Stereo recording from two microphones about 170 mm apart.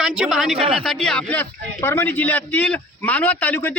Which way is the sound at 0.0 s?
5° right (ahead or behind).